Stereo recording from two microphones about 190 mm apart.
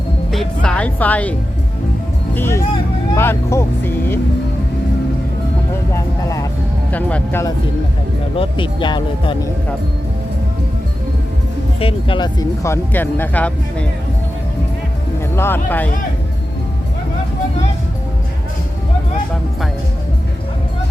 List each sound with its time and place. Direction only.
0.3 s speech: 5° left (ahead or behind)
5.9 s speech: 15° left (ahead or behind)
8.4 s speech: 25° left (ahead or behind)
11.8 s speech: 30° left (ahead or behind); by 13.8 s 5° left (ahead or behind)
15.4 s speech: 10° left (ahead or behind)